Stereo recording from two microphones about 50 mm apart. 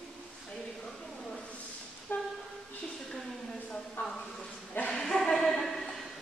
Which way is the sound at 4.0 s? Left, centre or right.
Centre.